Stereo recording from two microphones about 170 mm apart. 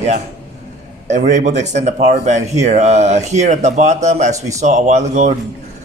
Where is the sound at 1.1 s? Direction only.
45° right (ahead or behind).